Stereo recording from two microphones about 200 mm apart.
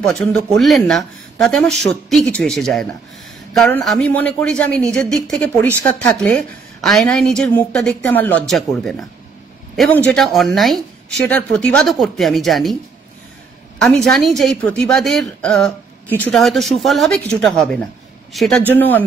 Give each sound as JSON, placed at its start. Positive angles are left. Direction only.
{"t": 0.0, "sound": "a woman's voice", "side_deg": 5}
{"t": 13.7, "sound": "a woman's voice", "side_deg": 0}